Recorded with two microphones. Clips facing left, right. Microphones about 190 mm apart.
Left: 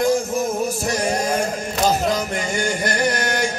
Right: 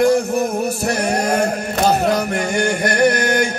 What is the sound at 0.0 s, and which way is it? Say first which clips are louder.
Music: right 4 dB; 65° right (ahead or behind).